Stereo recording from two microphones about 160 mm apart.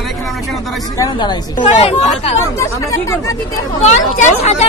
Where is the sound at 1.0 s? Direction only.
30° left (ahead or behind).